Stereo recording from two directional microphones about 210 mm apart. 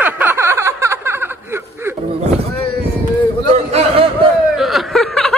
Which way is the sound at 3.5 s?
30° right (ahead or behind).